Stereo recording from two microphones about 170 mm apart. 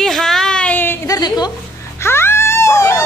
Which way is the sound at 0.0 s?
Centre (ahead or behind).